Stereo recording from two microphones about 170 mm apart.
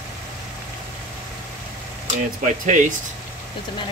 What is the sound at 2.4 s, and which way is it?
Speech, 50° right (ahead or behind).